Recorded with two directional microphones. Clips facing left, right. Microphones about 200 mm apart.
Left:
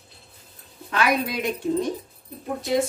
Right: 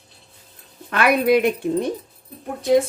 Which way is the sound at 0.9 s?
60° right (ahead or behind).